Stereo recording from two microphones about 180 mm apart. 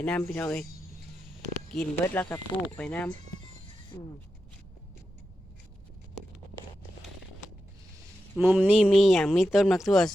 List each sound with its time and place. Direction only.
0.0 s speech: 5° left (ahead or behind)
1.7 s speech: 5° left (ahead or behind)
3.9 s speech: 20° left (ahead or behind)
8.4 s speech: 5° right (ahead or behind)